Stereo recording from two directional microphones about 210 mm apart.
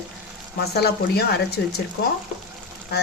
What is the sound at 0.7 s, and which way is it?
Speech, 50° left (ahead or behind).